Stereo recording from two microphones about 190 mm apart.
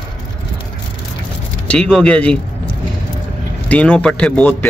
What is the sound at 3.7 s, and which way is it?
A man's voice, 5° left (ahead or behind).